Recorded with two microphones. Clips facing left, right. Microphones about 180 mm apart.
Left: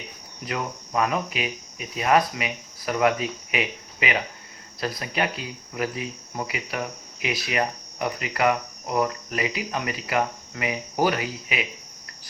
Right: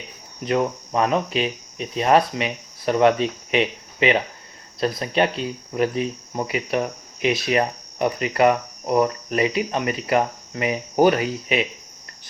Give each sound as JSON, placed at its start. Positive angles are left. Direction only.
{"t": 0.4, "sound": "speech", "side_deg": -30}